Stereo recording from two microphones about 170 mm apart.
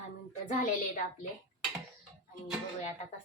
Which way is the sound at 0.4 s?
50° left (ahead or behind).